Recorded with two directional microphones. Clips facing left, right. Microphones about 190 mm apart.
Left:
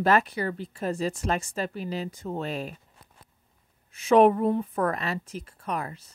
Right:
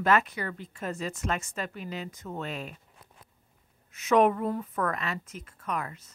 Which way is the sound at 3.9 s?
30° left (ahead or behind).